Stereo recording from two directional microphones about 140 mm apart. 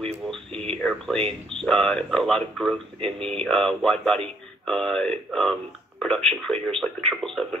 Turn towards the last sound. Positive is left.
turn(degrees=5)  # may be behind; listen again after turning